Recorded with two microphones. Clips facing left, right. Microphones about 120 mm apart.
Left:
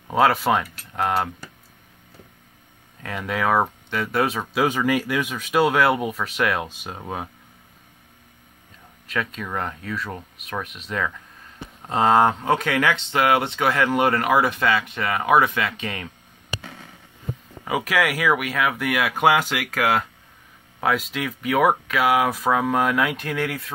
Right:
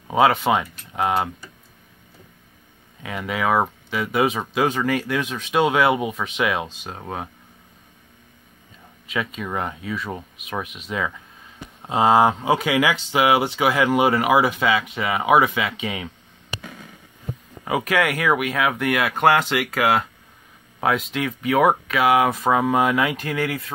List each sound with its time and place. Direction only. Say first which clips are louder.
0.1 s speech: right 1 dB; centre (ahead or behind)
3.0 s speech: even; centre (ahead or behind)
9.0 s speech: right 1 dB; centre (ahead or behind)
17.6 s speech: right 1 dB; centre (ahead or behind)